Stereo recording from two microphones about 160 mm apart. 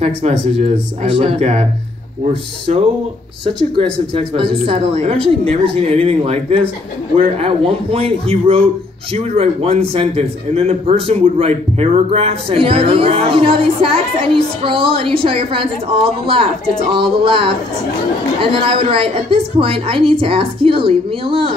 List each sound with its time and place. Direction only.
0.6 s speech: 35° right (ahead or behind)
4.4 s speech: 35° right (ahead or behind)